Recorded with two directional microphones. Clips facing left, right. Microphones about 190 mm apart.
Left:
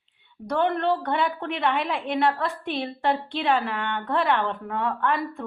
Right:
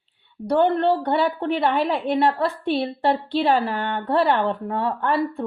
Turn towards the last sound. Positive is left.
turn(degrees=-35)  # may be behind; listen again after turning